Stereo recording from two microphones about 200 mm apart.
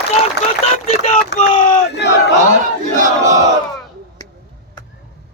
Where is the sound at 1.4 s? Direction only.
25° left (ahead or behind).